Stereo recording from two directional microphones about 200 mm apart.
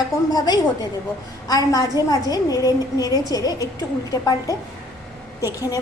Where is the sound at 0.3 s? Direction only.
20° left (ahead or behind).